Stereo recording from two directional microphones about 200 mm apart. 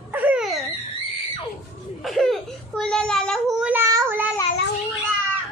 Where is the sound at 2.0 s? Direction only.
Centre (ahead or behind).